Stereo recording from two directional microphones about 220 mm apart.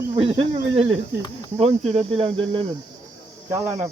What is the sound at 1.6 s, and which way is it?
Speech, 30° right (ahead or behind).